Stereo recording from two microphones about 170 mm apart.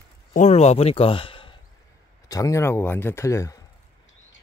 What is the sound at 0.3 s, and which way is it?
A man's voice, 45° left (ahead or behind).